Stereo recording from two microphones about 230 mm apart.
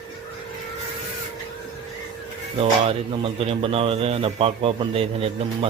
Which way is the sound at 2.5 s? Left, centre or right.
Right.